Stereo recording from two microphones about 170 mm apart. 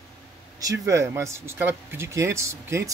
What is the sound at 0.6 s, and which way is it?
Speech, 20° right (ahead or behind).